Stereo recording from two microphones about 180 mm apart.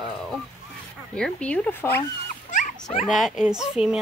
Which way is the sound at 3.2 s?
Centre (ahead or behind).